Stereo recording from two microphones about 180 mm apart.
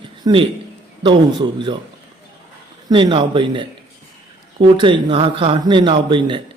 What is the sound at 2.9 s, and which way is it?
Speech, 25° right (ahead or behind).